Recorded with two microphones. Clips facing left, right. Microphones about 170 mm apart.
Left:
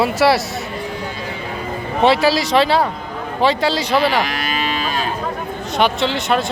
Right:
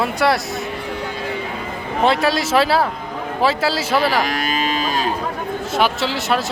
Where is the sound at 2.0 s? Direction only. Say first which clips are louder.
Left 3 dB; centre (ahead or behind).